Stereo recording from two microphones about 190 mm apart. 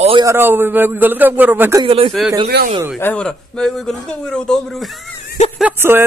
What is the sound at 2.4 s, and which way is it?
Speech, 55° right (ahead or behind).